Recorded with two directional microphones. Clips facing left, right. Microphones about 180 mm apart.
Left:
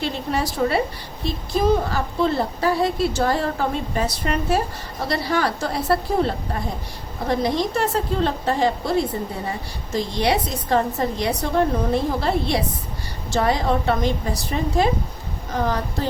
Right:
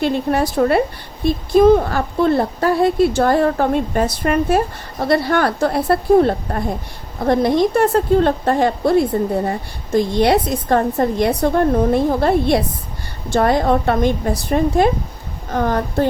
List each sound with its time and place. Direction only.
0.0 s a woman's voice: 55° right (ahead or behind)